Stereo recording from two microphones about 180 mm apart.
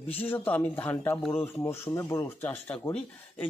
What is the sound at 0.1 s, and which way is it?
A man's voice, 10° left (ahead or behind).